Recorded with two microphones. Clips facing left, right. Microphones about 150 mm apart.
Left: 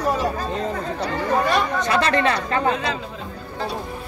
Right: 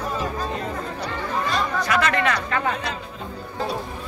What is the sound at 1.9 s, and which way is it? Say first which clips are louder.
Speech: left 2 dB; 30° left (ahead or behind).